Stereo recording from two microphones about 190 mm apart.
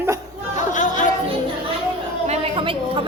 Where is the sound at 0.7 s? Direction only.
40° left (ahead or behind).